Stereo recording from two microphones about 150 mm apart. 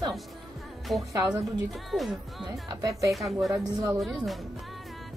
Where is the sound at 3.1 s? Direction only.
Centre (ahead or behind).